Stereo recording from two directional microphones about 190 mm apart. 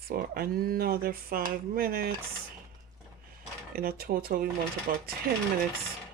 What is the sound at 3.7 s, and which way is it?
Speech, 50° right (ahead or behind).